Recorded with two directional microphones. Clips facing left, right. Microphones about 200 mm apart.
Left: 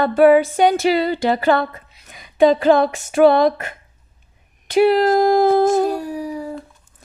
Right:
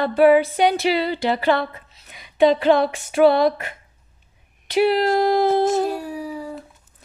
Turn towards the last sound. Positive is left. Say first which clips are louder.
# left 4 dB
turn(degrees=45)  # may be behind; listen again after turning